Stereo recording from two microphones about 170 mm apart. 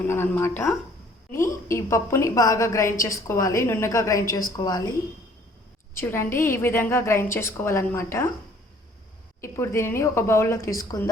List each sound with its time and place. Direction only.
0.0 s a woman's voice: 15° left (ahead or behind)
5.9 s a woman's voice: 15° left (ahead or behind)
9.4 s a woman's voice: 15° left (ahead or behind)